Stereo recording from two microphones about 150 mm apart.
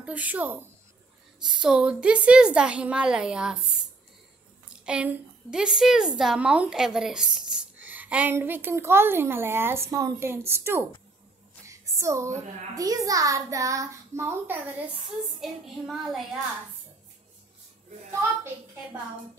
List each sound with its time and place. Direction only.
0.0 s a woman's voice: 10° right (ahead or behind)
4.6 s a woman's voice: 5° right (ahead or behind)
11.6 s a sound: 20° right (ahead or behind)
12.7 s a child's voice: 25° right (ahead or behind)
15.4 s a woman's voice: centre (ahead or behind)